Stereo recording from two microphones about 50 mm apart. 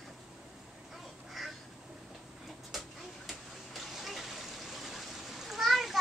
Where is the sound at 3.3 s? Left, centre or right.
Centre.